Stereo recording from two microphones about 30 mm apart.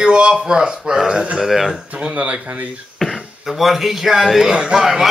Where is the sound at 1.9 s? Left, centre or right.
Right.